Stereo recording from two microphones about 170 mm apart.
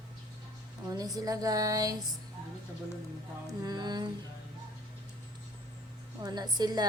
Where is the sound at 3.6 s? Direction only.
25° right (ahead or behind).